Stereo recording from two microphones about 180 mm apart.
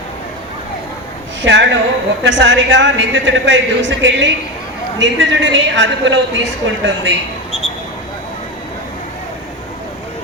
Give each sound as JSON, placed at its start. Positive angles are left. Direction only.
{"t": 1.4, "sound": "a woman's voice", "side_deg": -90}